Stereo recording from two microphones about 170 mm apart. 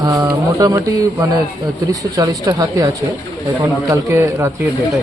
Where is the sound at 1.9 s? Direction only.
20° right (ahead or behind).